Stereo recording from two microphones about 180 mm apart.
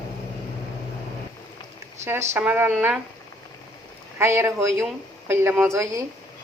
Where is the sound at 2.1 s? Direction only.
10° right (ahead or behind).